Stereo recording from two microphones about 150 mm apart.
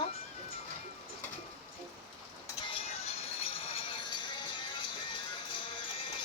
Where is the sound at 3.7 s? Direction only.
35° left (ahead or behind).